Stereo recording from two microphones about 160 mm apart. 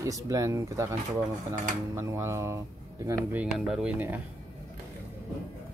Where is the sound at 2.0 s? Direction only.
15° right (ahead or behind).